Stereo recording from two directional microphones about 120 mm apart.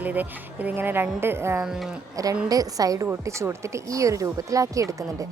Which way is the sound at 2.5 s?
30° right (ahead or behind).